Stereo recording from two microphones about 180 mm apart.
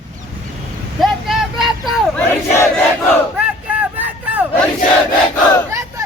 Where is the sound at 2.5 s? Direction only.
15° left (ahead or behind).